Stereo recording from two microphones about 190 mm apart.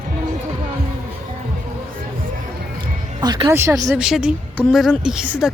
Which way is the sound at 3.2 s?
20° right (ahead or behind).